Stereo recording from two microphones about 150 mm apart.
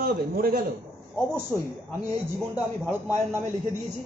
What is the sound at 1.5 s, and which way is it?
Speech, 10° left (ahead or behind).